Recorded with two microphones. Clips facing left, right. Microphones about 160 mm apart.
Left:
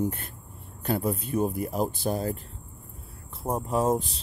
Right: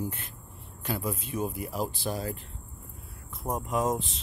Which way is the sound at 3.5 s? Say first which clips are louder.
Left 3 dB; 30° left (ahead or behind).